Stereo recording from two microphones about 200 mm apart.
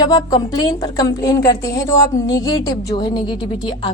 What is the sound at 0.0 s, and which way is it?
A woman's voice, 20° left (ahead or behind).